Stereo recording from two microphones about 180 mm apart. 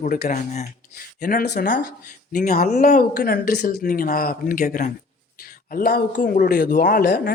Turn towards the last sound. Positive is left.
turn(degrees=55)  # may be behind; listen again after turning